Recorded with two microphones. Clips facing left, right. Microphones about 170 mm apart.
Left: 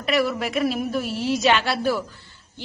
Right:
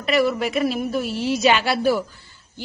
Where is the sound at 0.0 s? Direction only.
Centre (ahead or behind).